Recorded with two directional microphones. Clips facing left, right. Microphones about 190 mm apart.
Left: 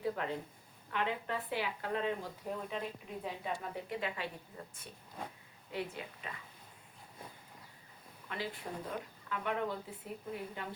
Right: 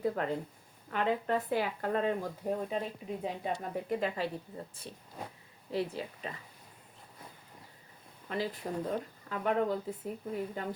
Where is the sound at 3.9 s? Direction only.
40° right (ahead or behind).